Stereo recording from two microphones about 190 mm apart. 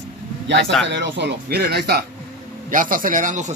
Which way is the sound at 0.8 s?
70° right (ahead or behind).